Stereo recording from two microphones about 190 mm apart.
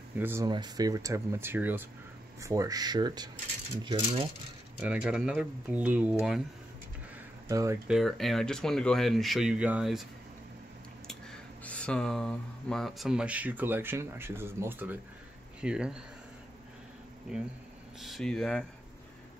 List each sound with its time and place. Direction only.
0.2 s speech: 10° right (ahead or behind)
4.8 s speech: 5° right (ahead or behind)
7.4 s speech: 15° right (ahead or behind)
7.9 s speech: centre (ahead or behind)
11.6 s speech: 5° left (ahead or behind)
17.3 s speech: 5° right (ahead or behind)